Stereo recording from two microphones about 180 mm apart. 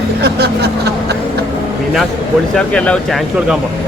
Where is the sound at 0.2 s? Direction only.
65° right (ahead or behind).